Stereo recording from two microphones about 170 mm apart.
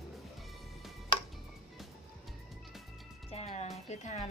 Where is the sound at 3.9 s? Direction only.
40° left (ahead or behind).